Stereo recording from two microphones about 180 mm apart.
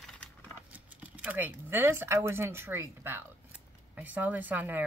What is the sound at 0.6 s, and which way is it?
Speech, 10° right (ahead or behind).